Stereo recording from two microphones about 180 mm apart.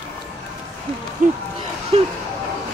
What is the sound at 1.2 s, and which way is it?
Speech, 45° right (ahead or behind).